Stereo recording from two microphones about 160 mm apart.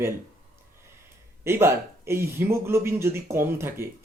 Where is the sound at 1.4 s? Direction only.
15° right (ahead or behind).